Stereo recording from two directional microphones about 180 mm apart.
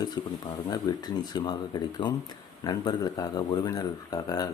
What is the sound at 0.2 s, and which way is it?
Speech, 25° left (ahead or behind).